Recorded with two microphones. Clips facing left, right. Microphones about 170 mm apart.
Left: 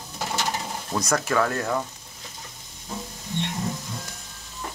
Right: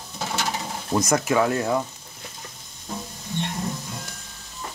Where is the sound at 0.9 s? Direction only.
20° right (ahead or behind).